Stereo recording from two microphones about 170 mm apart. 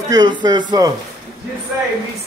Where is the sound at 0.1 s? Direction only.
25° right (ahead or behind).